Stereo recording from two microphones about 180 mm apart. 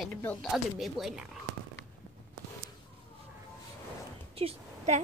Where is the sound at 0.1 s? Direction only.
10° left (ahead or behind).